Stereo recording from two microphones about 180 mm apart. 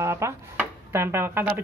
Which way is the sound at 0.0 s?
15° right (ahead or behind).